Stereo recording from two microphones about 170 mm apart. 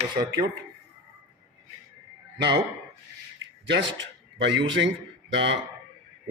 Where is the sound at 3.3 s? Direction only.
90° right.